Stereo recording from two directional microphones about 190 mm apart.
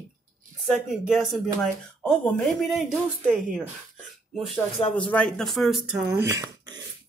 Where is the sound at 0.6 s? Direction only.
Centre (ahead or behind).